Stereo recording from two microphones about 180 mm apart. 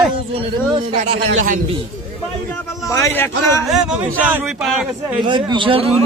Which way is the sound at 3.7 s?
5° right (ahead or behind).